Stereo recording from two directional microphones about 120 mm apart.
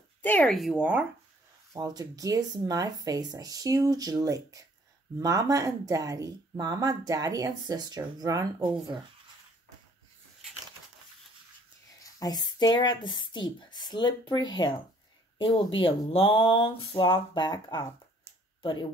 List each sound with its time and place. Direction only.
0.2 s speech: 15° left (ahead or behind)
0.5 s speech: centre (ahead or behind)
1.7 s speech: 30° right (ahead or behind)
12.0 s speech: 30° left (ahead or behind)